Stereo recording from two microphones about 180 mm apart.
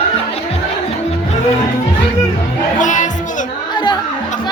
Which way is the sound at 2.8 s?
45° left (ahead or behind).